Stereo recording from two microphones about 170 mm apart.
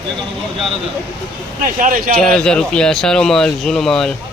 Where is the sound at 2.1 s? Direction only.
5° left (ahead or behind).